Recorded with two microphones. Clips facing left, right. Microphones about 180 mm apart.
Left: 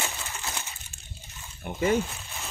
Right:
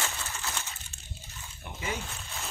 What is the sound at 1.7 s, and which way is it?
Speech, 60° left (ahead or behind).